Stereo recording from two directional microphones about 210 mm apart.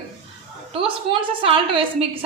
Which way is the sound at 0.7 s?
25° right (ahead or behind).